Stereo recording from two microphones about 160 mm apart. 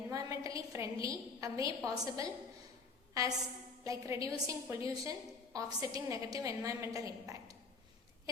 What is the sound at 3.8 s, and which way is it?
A woman's voice, 20° right (ahead or behind).